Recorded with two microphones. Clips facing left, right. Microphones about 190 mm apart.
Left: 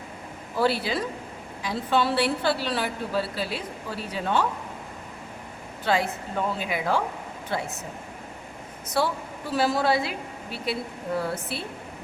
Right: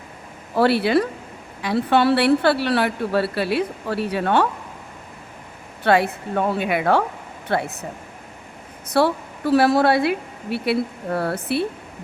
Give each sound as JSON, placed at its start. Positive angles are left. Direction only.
{"t": 0.5, "sound": "a woman's voice", "side_deg": -65}
{"t": 5.8, "sound": "a woman's voice", "side_deg": -65}
{"t": 8.9, "sound": "a woman's voice", "side_deg": -65}